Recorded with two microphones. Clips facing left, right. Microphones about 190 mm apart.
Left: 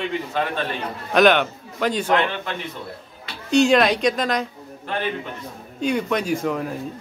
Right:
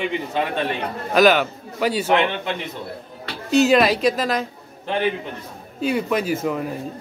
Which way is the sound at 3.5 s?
5° right (ahead or behind).